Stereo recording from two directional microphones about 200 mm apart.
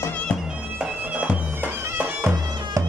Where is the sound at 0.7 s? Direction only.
5° right (ahead or behind).